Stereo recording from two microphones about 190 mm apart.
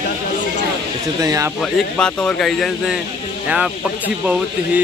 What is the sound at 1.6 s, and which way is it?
Speech, 5° left (ahead or behind).